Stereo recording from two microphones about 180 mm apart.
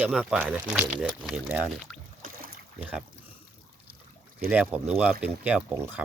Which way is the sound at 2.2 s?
55° right (ahead or behind).